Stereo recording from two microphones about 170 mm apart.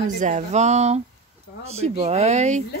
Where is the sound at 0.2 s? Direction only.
45° right (ahead or behind).